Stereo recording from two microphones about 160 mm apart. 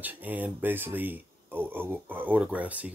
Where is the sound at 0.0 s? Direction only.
10° right (ahead or behind).